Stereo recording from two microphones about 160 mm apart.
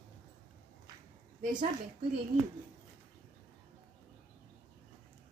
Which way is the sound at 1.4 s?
55° right (ahead or behind).